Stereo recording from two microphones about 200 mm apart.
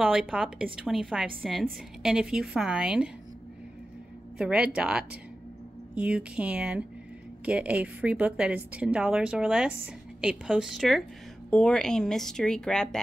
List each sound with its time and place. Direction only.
0.0 s a woman's voice: centre (ahead or behind)
4.4 s a woman's voice: 5° right (ahead or behind)